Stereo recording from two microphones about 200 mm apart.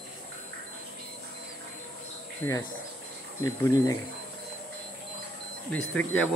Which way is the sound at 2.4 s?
10° left (ahead or behind).